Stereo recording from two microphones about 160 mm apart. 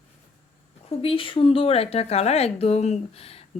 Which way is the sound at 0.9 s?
35° left (ahead or behind).